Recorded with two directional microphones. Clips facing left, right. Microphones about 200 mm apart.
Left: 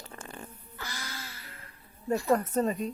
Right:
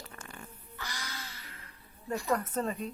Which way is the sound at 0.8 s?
15° right (ahead or behind).